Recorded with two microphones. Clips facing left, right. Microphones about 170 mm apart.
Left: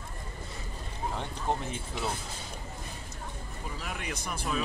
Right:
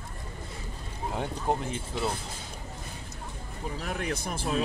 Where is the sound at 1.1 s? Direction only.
10° right (ahead or behind).